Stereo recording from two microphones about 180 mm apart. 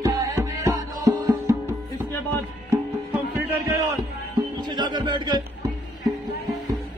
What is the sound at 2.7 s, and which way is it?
Music, 15° right (ahead or behind).